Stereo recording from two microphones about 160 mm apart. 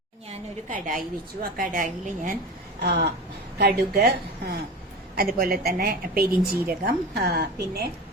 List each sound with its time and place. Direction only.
0.3 s a woman's voice: 55° right (ahead or behind)
2.8 s a woman's voice: 90° right
5.1 s a woman's voice: 70° right (ahead or behind)
6.7 s a woman's voice: 85° right